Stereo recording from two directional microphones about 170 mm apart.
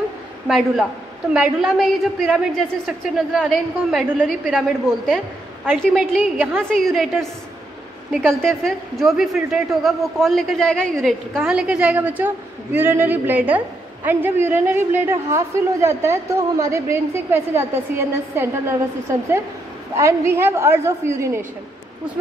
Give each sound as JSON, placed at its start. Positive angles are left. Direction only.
{"t": 0.5, "sound": "a woman's voice", "side_deg": 0}
{"t": 6.6, "sound": "a woman's voice", "side_deg": 0}
{"t": 20.0, "sound": "a woman's voice", "side_deg": -15}